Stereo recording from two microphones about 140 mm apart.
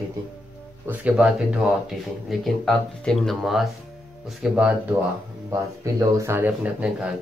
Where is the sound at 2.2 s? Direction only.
Centre (ahead or behind).